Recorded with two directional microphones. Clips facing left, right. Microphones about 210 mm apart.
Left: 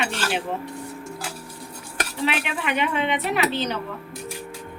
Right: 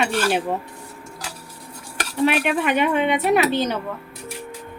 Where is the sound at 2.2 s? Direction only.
50° right (ahead or behind).